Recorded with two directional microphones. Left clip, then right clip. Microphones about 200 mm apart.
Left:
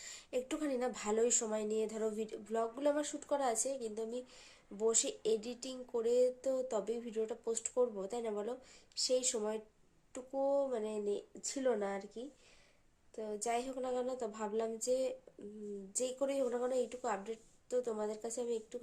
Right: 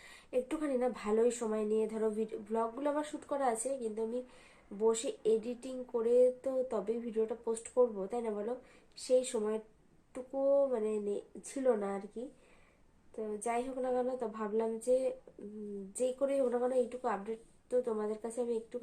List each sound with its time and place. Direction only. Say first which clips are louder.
0.0 s speech: right 4 dB; 15° left (ahead or behind)